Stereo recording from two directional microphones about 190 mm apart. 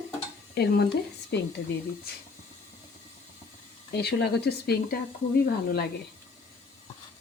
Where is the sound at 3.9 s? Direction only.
60° left (ahead or behind).